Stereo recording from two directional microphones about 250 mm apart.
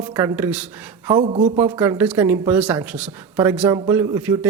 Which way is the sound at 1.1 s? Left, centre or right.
Centre.